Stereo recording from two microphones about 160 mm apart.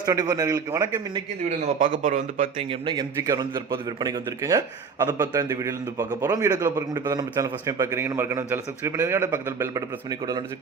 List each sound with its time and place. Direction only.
0.0 s a man's voice: 25° right (ahead or behind)
1.8 s a man's voice: 55° right (ahead or behind)
2.6 s a man's voice: 35° right (ahead or behind)
2.9 s a man's voice: 20° right (ahead or behind)